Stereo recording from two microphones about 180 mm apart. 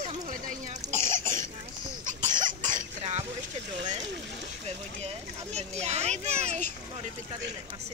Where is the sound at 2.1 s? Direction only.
45° right (ahead or behind).